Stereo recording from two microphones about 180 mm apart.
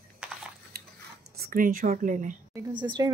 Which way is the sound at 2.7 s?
25° right (ahead or behind).